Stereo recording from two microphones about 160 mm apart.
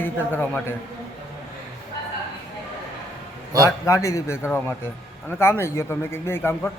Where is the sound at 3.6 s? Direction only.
20° left (ahead or behind).